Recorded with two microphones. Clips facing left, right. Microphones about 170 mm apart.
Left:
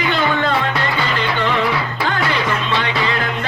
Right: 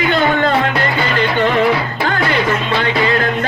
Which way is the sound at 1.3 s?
40° right (ahead or behind).